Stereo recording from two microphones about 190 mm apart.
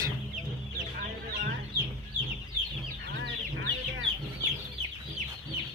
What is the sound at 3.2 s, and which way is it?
Chicken, 85° right.